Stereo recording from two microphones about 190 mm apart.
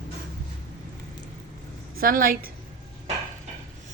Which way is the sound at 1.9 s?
50° right (ahead or behind).